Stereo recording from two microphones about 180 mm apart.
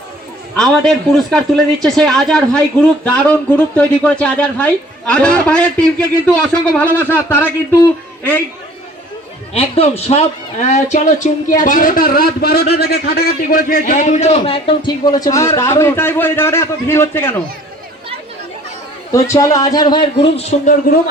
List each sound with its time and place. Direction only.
0.5 s speech: centre (ahead or behind)
9.6 s speech: 35° left (ahead or behind); by 17.4 s 15° left (ahead or behind)
19.1 s a man's voice: 15° left (ahead or behind); by 20.7 s 35° left (ahead or behind)